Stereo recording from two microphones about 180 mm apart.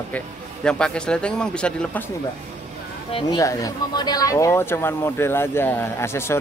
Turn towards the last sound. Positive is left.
turn(degrees=15)  # may be behind; listen again after turning